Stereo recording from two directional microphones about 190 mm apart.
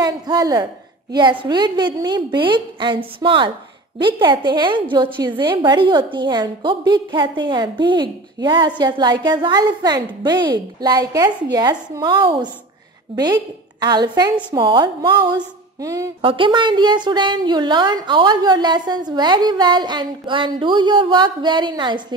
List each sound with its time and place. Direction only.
0.0 s a woman's voice: 20° right (ahead or behind)
16.2 s a woman's voice: 25° right (ahead or behind)